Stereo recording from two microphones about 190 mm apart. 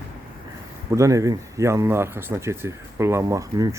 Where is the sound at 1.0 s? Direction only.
15° right (ahead or behind).